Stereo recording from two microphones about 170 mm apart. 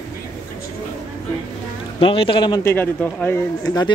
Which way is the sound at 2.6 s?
15° left (ahead or behind).